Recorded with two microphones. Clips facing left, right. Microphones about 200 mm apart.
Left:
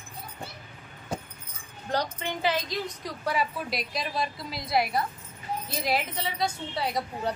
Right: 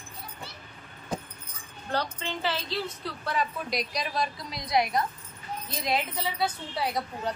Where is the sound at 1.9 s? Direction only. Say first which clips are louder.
Left 1 dB; 15° left (ahead or behind).